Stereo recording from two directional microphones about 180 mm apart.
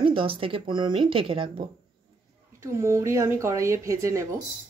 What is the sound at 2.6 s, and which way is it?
Speech, 15° right (ahead or behind).